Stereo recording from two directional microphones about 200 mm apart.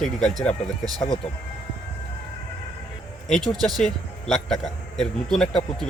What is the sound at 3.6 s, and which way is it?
Speech, centre (ahead or behind).